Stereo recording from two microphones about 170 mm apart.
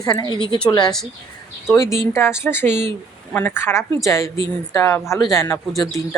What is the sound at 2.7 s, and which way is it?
Speech, 40° right (ahead or behind).